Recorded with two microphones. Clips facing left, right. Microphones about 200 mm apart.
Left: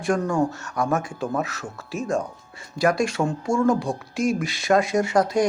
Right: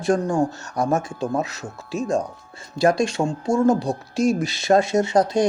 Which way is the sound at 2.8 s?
25° right (ahead or behind).